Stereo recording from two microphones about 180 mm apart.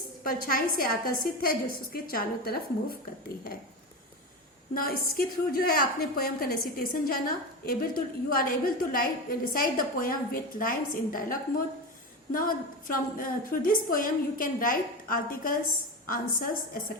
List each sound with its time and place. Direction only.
0.3 s a woman's voice: 55° left (ahead or behind)
4.7 s a woman's voice: 55° left (ahead or behind)